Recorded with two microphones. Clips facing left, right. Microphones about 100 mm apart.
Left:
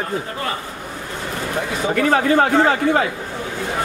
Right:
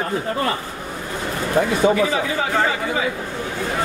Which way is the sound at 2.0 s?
55° left (ahead or behind).